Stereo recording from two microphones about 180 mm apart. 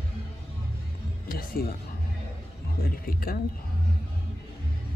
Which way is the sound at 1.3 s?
55° left (ahead or behind).